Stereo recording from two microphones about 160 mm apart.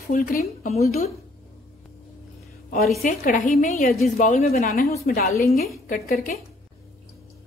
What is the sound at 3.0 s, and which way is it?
A woman's voice, 60° left (ahead or behind).